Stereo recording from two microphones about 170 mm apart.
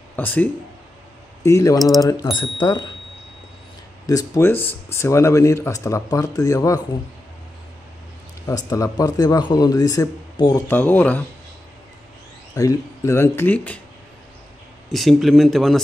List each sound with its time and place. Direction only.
0.1 s speech: 10° left (ahead or behind); by 2.9 s 25° left (ahead or behind)
4.0 s speech: 20° left (ahead or behind)
8.5 s speech: 20° left (ahead or behind)
10.7 s speech: 10° left (ahead or behind)
12.5 s speech: 20° left (ahead or behind)
14.9 s speech: centre (ahead or behind)